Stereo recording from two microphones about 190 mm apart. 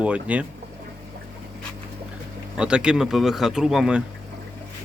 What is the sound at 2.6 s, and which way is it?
Speech, 5° right (ahead or behind).